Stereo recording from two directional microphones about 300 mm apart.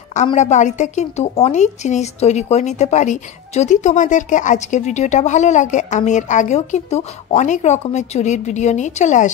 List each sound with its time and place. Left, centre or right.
0.1 s a woman's voice: left